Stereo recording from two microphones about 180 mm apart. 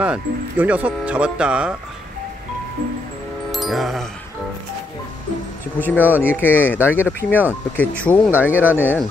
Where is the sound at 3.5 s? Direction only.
Centre (ahead or behind).